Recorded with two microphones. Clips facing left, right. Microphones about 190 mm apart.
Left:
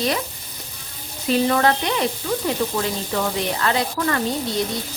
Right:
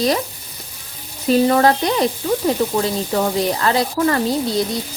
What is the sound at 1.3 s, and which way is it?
A woman's voice, 35° right (ahead or behind).